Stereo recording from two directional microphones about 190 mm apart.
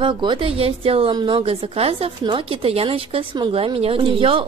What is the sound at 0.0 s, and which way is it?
Speech, 25° right (ahead or behind).